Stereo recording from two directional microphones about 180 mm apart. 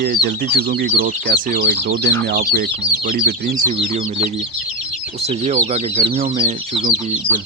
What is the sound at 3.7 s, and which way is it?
Speech, 30° right (ahead or behind).